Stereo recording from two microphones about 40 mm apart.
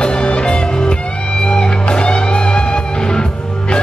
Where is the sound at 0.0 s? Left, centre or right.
Left.